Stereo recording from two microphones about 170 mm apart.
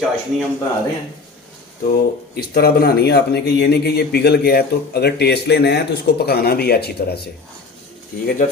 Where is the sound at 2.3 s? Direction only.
65° left (ahead or behind).